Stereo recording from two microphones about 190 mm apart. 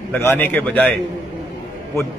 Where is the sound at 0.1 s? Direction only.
10° left (ahead or behind).